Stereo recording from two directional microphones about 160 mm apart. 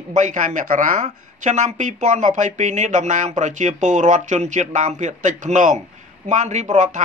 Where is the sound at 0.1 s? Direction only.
50° right (ahead or behind).